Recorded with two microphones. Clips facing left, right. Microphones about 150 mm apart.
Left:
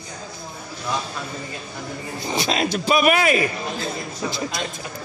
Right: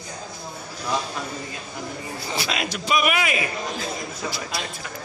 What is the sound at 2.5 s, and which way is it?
Speech, 35° left (ahead or behind).